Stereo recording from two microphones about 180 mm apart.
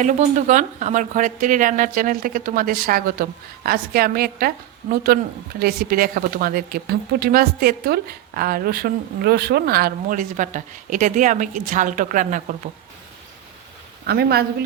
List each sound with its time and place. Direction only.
0.0 s speech: 45° right (ahead or behind)
14.1 s speech: 60° right (ahead or behind)